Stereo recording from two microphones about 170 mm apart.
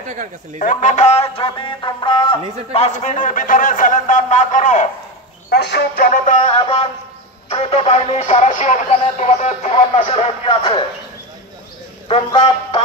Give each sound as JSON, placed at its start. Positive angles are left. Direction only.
{"t": 0.6, "sound": "music", "side_deg": 50}
{"t": 2.7, "sound": "a man's voice", "side_deg": 40}
{"t": 5.5, "sound": "speech", "side_deg": 80}
{"t": 6.0, "sound": "a man's voice", "side_deg": 45}
{"t": 6.6, "sound": "music", "side_deg": 35}
{"t": 12.1, "sound": "music", "side_deg": 30}